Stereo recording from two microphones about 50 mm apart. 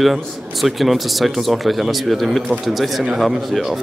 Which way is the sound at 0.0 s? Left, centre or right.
Centre.